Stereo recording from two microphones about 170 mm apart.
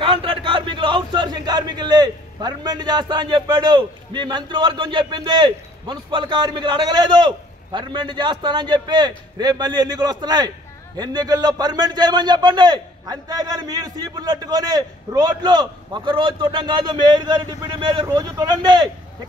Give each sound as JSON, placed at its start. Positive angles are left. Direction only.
{"t": 0.0, "sound": "a man's voice", "side_deg": -30}